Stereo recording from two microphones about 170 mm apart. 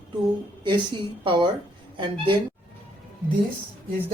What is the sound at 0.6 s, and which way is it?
Speech, 30° right (ahead or behind).